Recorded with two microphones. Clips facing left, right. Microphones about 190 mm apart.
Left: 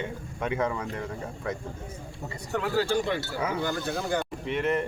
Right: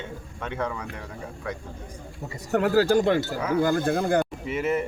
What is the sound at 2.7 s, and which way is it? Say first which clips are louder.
Speech: right 6 dB; 45° right (ahead or behind).